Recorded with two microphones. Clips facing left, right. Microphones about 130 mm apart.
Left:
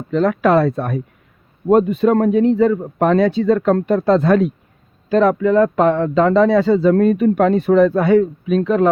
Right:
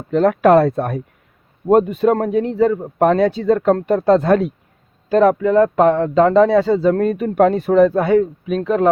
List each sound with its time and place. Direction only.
0.1 s speech: 50° right (ahead or behind)